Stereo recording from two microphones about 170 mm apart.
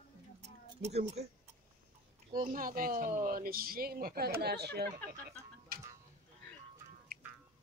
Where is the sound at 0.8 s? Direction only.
40° right (ahead or behind).